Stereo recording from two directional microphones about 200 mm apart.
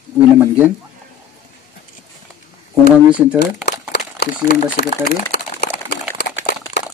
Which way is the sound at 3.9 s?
55° left (ahead or behind).